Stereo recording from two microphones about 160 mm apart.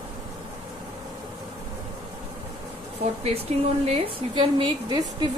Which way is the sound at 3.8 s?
35° right (ahead or behind).